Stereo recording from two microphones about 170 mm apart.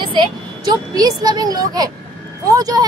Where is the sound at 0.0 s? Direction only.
30° right (ahead or behind).